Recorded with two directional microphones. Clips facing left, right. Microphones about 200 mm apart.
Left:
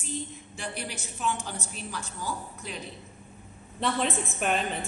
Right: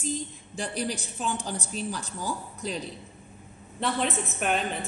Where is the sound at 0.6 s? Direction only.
35° right (ahead or behind).